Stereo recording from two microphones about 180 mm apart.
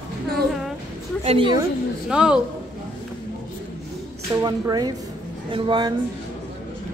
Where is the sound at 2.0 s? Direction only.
5° right (ahead or behind).